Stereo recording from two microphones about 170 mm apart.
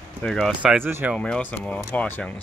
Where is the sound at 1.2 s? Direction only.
10° left (ahead or behind).